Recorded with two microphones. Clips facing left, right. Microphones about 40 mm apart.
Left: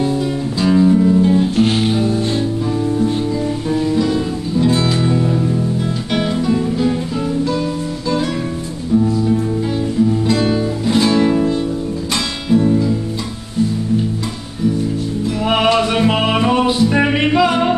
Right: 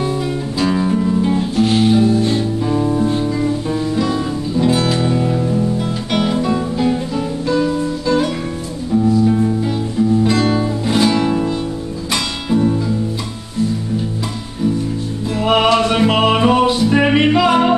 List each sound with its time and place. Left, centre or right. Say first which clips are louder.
0.6 s music: left 4 dB; centre
1.6 s music: right 1 dB; left
2.8 s music: even; right
3.9 s music: left 1 dB; centre
8.9 s music: right 1 dB; centre
15.4 s music: right 2 dB; centre